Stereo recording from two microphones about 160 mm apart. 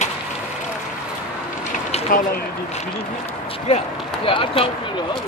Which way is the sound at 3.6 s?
35° left (ahead or behind).